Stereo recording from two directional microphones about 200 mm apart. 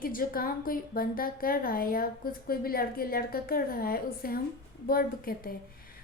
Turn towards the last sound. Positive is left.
turn(degrees=45)  # may be behind; listen again after turning